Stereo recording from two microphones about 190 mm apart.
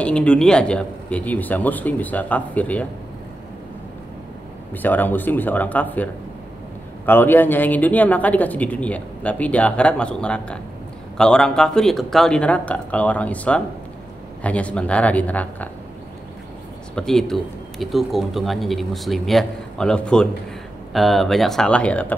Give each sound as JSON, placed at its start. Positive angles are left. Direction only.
{"t": 0.0, "sound": "speech", "side_deg": 5}
{"t": 4.8, "sound": "speech", "side_deg": 10}
{"t": 7.1, "sound": "speech", "side_deg": 10}
{"t": 16.9, "sound": "speech", "side_deg": 5}